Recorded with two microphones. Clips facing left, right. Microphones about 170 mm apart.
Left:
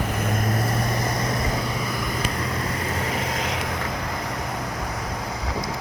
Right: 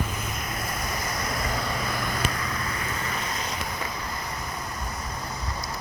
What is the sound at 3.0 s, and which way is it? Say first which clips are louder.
Vehicle: left 5 dB; 90° left.